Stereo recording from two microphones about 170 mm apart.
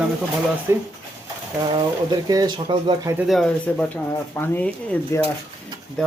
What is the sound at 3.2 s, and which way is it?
Speech, centre (ahead or behind).